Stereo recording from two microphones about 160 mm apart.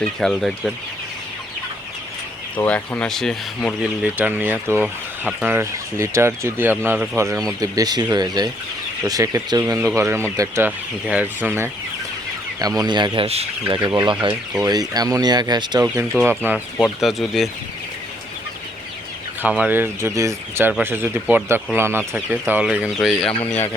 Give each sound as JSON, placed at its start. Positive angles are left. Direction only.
{"t": 0.2, "sound": "speech", "side_deg": 0}
{"t": 2.6, "sound": "speech", "side_deg": 10}
{"t": 4.0, "sound": "speech", "side_deg": -10}
{"t": 7.6, "sound": "speech", "side_deg": -25}
{"t": 12.5, "sound": "speech", "side_deg": -25}
{"t": 16.1, "sound": "speech", "side_deg": 5}
{"t": 19.4, "sound": "speech", "side_deg": -10}